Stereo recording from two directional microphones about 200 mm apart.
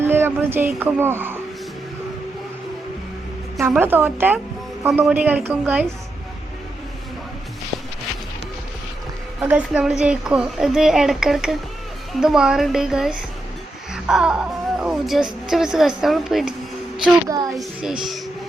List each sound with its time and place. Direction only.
0.0 s a sound: 10° right (ahead or behind)
0.8 s a woman's voice: 10° right (ahead or behind)
3.6 s a woman's voice: 10° right (ahead or behind)
9.4 s a woman's voice: 5° right (ahead or behind)
17.2 s a child's voice: 20° right (ahead or behind)
17.5 s a woman's voice: centre (ahead or behind)